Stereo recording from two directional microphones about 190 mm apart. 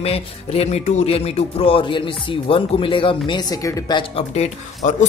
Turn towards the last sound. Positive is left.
turn(degrees=40)  # may be behind; listen again after turning